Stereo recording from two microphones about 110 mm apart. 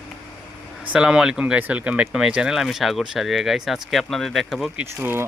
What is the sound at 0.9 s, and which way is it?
Speech, 10° right (ahead or behind).